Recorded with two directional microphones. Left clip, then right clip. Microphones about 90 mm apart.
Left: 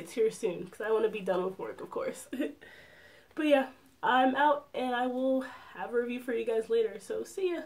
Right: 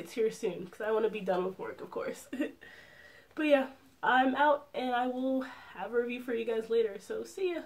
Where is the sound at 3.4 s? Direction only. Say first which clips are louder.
Left 1 dB; 35° left (ahead or behind).